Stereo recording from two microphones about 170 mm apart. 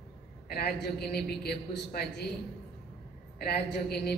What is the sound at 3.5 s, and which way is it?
Speech, 65° left (ahead or behind).